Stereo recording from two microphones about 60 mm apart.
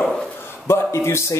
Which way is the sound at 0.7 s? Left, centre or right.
Left.